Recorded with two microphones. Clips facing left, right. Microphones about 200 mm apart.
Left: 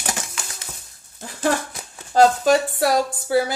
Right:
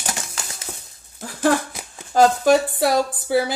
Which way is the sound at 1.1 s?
5° right (ahead or behind).